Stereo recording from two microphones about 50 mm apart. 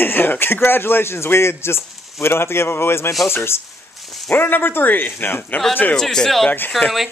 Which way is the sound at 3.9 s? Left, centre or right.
Centre.